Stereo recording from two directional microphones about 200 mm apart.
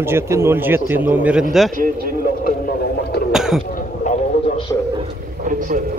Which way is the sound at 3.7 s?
40° left (ahead or behind).